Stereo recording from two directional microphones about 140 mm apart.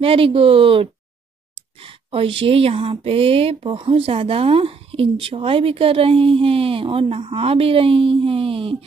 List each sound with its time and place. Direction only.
0.0 s speech: 40° right (ahead or behind)